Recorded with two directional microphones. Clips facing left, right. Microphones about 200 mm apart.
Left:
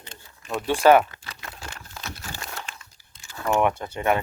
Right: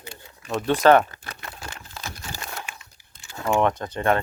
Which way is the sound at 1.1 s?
50° right (ahead or behind).